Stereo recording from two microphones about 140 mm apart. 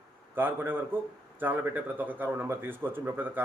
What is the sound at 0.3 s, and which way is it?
Speech, 15° right (ahead or behind).